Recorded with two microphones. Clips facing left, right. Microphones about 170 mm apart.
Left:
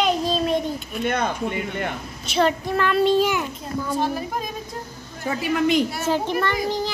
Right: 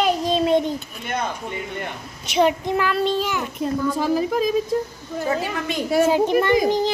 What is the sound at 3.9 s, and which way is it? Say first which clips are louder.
Speech: right 3 dB; 90° right.